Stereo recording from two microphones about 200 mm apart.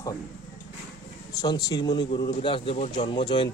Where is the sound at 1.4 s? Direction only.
20° left (ahead or behind).